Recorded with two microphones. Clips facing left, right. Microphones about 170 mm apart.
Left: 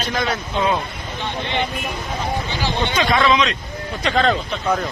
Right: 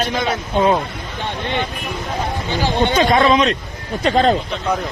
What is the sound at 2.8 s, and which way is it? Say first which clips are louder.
A man's voice: right 4 dB; 45° right (ahead or behind).